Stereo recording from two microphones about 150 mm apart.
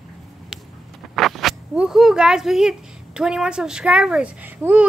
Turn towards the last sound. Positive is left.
turn(degrees=-10)  # may be behind; listen again after turning